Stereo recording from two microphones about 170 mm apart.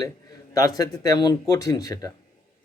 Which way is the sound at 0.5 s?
20° left (ahead or behind).